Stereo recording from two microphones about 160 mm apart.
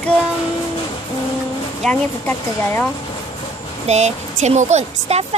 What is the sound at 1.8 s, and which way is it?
Speech, 5° left (ahead or behind).